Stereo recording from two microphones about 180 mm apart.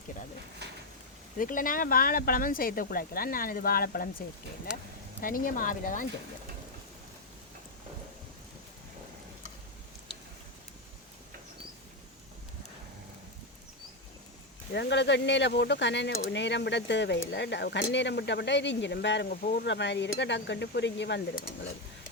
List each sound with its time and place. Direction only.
0.6 s a sound: 70° right (ahead or behind)
1.4 s speech: 50° left (ahead or behind)
5.2 s speech: 50° left (ahead or behind)
14.7 s speech: 70° left (ahead or behind)